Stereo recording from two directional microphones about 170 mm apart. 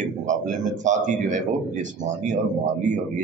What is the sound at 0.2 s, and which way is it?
Speech, 45° right (ahead or behind).